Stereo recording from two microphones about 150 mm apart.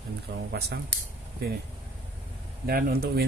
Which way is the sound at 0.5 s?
90° right.